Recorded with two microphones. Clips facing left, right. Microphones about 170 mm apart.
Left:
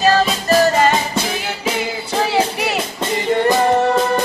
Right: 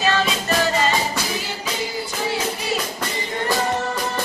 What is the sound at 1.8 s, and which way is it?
Music, 70° left (ahead or behind).